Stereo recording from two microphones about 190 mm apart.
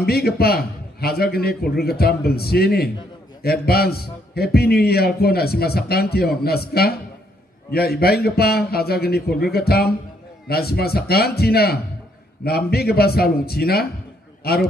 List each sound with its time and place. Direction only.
0.0 s a man's voice: 55° left (ahead or behind)